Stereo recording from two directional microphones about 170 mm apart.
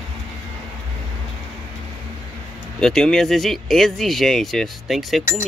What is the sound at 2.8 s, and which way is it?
Speech, centre (ahead or behind).